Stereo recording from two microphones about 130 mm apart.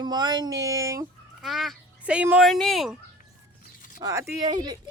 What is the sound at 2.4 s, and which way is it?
Speech, centre (ahead or behind).